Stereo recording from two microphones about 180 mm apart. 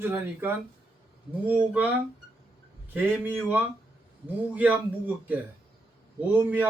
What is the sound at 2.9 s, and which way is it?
Speech, 10° right (ahead or behind).